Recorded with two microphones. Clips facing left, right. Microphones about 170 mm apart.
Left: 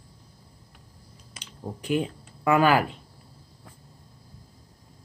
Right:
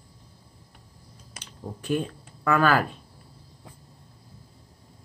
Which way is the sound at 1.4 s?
15° left (ahead or behind).